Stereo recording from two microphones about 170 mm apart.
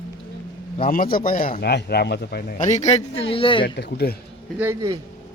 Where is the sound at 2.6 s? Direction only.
45° left (ahead or behind).